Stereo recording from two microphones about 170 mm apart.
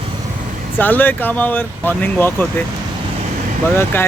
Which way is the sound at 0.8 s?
10° left (ahead or behind).